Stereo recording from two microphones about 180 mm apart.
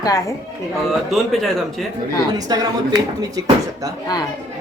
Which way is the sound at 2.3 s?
20° right (ahead or behind).